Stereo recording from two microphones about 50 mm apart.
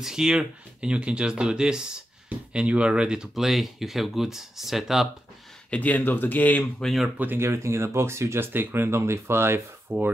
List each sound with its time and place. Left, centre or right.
0.0 s speech: centre
2.2 s speech: right
3.4 s speech: centre
5.7 s speech: left
6.8 s speech: centre
7.3 s speech: right
8.5 s speech: right